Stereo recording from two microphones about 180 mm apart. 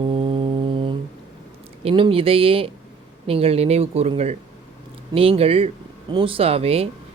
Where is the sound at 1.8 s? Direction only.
30° right (ahead or behind).